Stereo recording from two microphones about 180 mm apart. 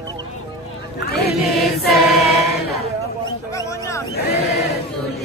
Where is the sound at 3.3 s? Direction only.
20° left (ahead or behind).